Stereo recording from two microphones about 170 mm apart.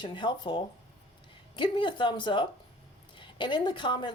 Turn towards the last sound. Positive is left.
turn(degrees=30)  # may be behind; listen again after turning